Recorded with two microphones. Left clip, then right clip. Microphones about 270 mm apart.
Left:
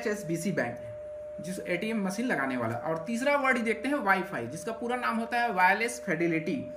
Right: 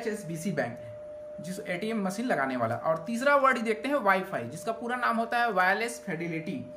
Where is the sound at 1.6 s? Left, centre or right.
Centre.